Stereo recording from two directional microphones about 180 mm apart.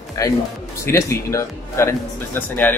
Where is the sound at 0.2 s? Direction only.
20° left (ahead or behind).